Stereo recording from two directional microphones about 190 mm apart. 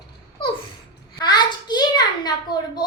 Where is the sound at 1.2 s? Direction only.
20° left (ahead or behind).